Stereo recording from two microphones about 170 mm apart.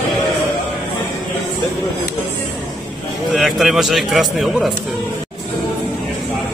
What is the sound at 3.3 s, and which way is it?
A man's voice, centre (ahead or behind).